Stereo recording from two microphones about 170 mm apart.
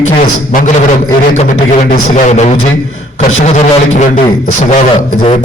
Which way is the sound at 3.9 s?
45° left (ahead or behind).